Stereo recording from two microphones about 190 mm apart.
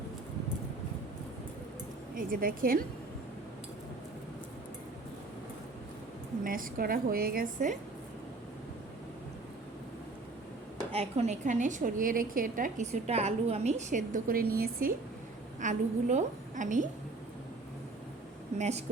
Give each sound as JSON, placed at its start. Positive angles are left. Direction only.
{"t": 2.1, "sound": "a woman's voice", "side_deg": -50}
{"t": 6.4, "sound": "a woman's voice", "side_deg": -45}
{"t": 10.9, "sound": "a woman's voice", "side_deg": -35}
{"t": 15.6, "sound": "a woman's voice", "side_deg": -40}
{"t": 18.5, "sound": "a woman's voice", "side_deg": -35}